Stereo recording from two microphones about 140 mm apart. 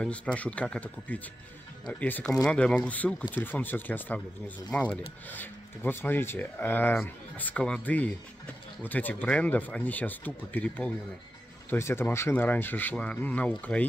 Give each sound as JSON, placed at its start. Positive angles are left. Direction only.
{"t": 0.0, "sound": "speech", "side_deg": 10}